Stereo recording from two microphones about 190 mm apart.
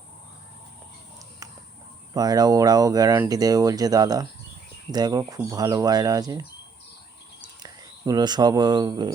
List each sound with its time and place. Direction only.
2.1 s speech: 20° right (ahead or behind)
7.6 s speech: 20° right (ahead or behind)